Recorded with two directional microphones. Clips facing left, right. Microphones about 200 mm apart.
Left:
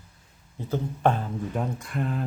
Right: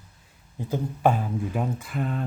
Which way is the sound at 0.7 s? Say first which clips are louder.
Right 1 dB; 10° right (ahead or behind).